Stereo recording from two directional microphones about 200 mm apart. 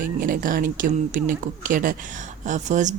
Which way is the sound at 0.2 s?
45° right (ahead or behind).